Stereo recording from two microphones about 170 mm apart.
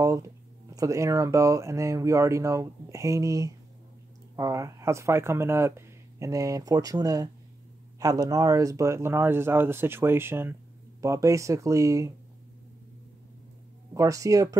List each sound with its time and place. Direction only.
0.7 s speech: 20° right (ahead or behind)
13.9 s speech: 20° right (ahead or behind)